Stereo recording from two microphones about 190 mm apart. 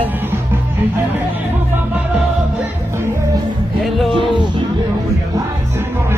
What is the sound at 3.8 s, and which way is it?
Music, centre (ahead or behind).